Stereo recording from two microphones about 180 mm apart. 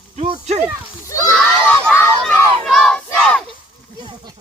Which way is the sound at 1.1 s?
15° left (ahead or behind).